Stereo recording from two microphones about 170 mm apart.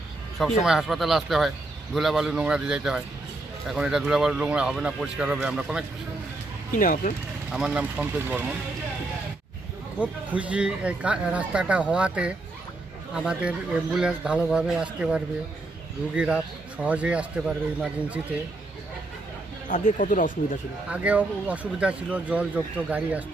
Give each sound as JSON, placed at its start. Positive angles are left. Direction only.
{"t": 0.6, "sound": "a man's voice", "side_deg": 0}
{"t": 6.7, "sound": "speech", "side_deg": 55}
{"t": 7.5, "sound": "speech", "side_deg": -5}
{"t": 10.0, "sound": "a man's voice", "side_deg": -10}
{"t": 19.6, "sound": "speech", "side_deg": 50}
{"t": 20.9, "sound": "speech", "side_deg": -10}